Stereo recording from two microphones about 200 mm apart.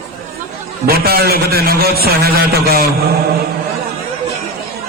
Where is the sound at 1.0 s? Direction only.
50° right (ahead or behind).